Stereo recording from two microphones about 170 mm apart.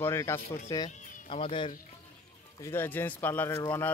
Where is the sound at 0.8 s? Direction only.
45° left (ahead or behind).